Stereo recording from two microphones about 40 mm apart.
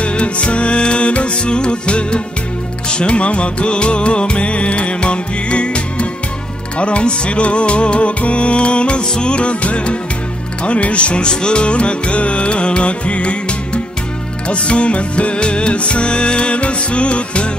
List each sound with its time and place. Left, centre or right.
0.0 s music: left